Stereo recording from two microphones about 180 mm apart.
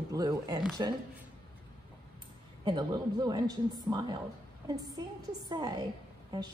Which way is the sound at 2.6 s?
25° right (ahead or behind).